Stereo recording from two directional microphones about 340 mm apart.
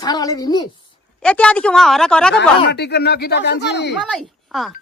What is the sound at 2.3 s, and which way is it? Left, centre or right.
Speech, left.